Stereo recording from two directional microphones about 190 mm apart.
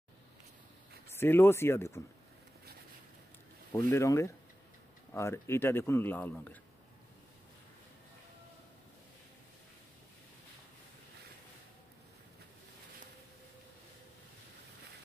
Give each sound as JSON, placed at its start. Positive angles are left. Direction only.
{"t": 1.0, "sound": "speech", "side_deg": 10}
{"t": 3.7, "sound": "a man's voice", "side_deg": 15}